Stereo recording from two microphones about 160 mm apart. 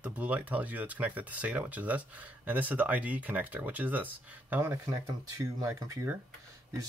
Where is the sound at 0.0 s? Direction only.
10° right (ahead or behind).